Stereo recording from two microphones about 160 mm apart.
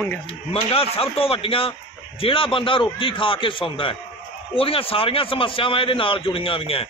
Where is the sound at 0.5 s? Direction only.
35° left (ahead or behind).